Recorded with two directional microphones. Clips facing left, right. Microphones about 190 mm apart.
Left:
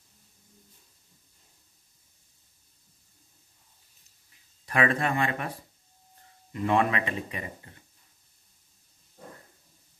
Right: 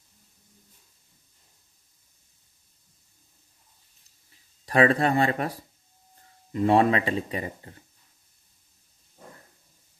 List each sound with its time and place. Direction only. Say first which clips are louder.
4.6 s speech: right 5 dB; 35° right (ahead or behind)